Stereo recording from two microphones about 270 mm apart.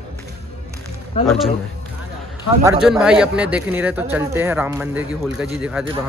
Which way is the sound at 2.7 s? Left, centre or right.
Centre.